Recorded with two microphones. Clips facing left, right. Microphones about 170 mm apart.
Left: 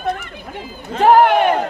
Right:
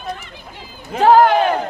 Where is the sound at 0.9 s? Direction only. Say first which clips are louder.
Even; 10° right (ahead or behind).